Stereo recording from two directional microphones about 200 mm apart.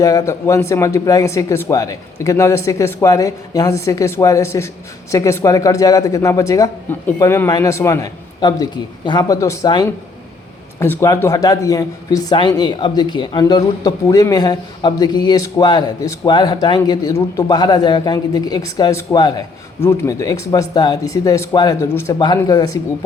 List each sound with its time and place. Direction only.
0.0 s speech: 15° left (ahead or behind)